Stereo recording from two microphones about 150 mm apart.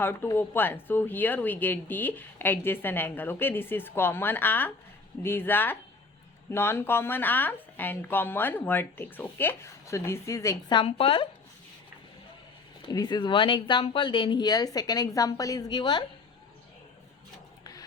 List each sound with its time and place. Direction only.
0.0 s a woman's voice: 15° left (ahead or behind)
10.8 s speech: 40° left (ahead or behind)
12.9 s speech: 25° left (ahead or behind)
17.6 s a sound: 25° left (ahead or behind)